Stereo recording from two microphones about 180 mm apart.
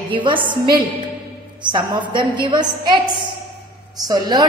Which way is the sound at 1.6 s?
25° right (ahead or behind).